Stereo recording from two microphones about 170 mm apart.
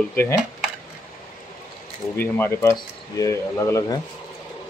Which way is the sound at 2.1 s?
10° left (ahead or behind).